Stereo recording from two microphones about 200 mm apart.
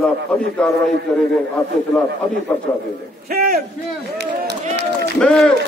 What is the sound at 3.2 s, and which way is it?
Speech, 50° right (ahead or behind).